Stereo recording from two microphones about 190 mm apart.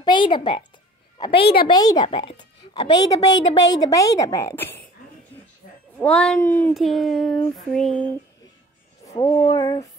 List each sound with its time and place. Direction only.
0.0 s a woman's voice: 25° left (ahead or behind)
5.9 s a woman's voice: 5° left (ahead or behind)
6.7 s a child's voice: centre (ahead or behind)
9.1 s speech: 25° left (ahead or behind)